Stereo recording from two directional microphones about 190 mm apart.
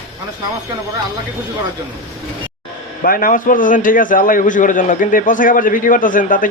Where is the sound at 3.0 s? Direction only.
50° left (ahead or behind).